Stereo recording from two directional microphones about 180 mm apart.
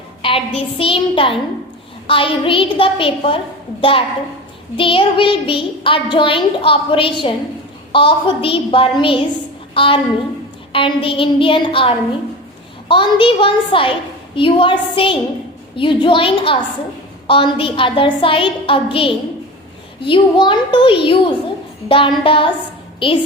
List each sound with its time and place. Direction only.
0.2 s a woman's voice: 30° left (ahead or behind)